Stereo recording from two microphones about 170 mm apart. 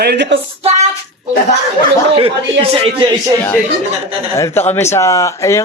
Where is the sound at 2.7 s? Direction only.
30° right (ahead or behind).